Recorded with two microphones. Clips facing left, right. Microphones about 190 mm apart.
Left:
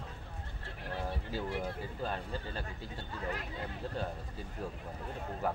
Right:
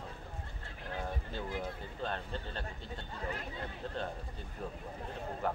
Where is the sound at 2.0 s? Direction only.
5° left (ahead or behind).